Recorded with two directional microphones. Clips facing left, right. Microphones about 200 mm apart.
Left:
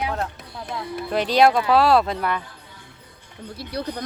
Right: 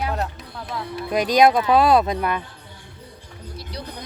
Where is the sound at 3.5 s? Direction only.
55° left (ahead or behind).